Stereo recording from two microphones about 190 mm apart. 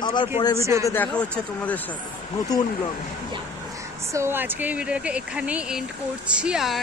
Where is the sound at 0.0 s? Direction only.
25° left (ahead or behind).